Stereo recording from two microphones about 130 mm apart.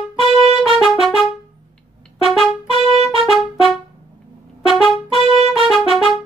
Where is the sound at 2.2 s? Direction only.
Centre (ahead or behind).